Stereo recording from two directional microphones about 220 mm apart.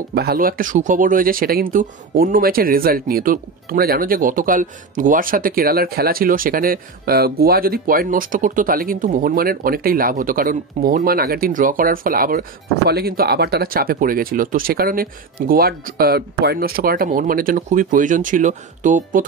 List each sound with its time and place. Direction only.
0.1 s speech: 45° right (ahead or behind)